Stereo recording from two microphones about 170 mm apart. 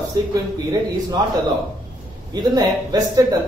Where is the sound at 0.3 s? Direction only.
25° right (ahead or behind).